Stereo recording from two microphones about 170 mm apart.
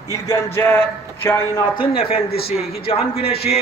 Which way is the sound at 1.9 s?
35° left (ahead or behind).